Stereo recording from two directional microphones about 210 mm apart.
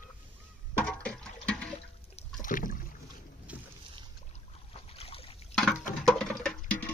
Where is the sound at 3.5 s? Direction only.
5° right (ahead or behind).